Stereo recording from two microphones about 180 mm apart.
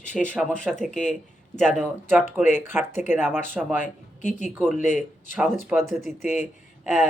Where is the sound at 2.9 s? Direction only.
40° left (ahead or behind).